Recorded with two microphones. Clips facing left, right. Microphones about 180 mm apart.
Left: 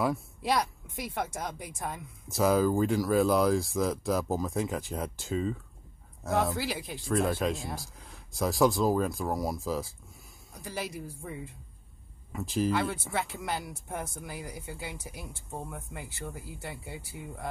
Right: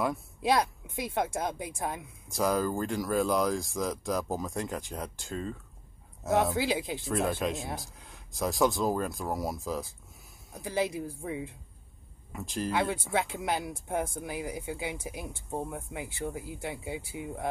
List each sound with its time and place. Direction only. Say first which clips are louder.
0.9 s speech: right 4 dB; 15° right (ahead or behind)
2.3 s speech: left 4 dB; 5° left (ahead or behind)
6.5 s speech: right 4 dB; 15° right (ahead or behind)
7.1 s speech: left 3 dB; centre (ahead or behind)
10.5 s speech: right 6 dB; 20° right (ahead or behind)
12.3 s speech: left 5 dB; centre (ahead or behind)
12.7 s speech: right 2 dB; 15° right (ahead or behind)